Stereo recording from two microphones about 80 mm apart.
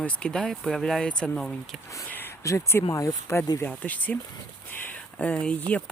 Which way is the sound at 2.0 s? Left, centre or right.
Left.